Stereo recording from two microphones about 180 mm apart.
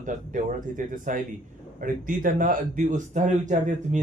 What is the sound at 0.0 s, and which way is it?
Speech, 45° right (ahead or behind).